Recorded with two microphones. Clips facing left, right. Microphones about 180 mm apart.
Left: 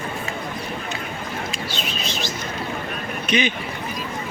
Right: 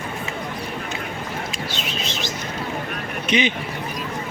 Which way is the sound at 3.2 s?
25° right (ahead or behind).